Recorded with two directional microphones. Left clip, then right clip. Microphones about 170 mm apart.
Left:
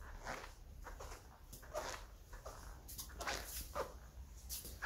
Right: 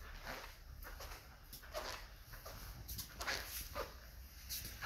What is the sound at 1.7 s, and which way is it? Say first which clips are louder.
Dog: left 1 dB; 10° left (ahead or behind).